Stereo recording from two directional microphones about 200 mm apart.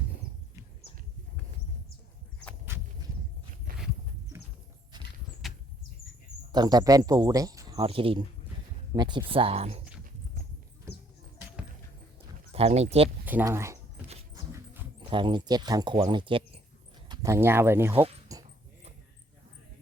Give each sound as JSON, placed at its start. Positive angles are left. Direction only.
{"t": 6.5, "sound": "speech", "side_deg": -20}
{"t": 10.9, "sound": "music", "side_deg": -15}
{"t": 12.5, "sound": "speech", "side_deg": -30}
{"t": 13.2, "sound": "speech", "side_deg": -10}
{"t": 14.5, "sound": "wild animals", "side_deg": -10}
{"t": 15.0, "sound": "speech", "side_deg": -25}
{"t": 18.3, "sound": "dog", "side_deg": -15}